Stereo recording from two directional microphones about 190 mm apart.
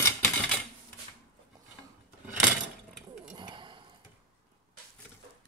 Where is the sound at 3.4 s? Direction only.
25° right (ahead or behind).